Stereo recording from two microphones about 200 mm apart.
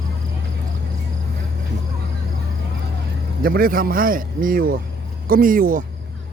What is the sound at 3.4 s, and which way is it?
A man's voice, 45° right (ahead or behind).